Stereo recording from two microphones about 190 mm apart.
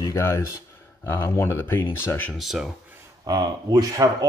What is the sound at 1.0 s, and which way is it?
Speech, 15° left (ahead or behind).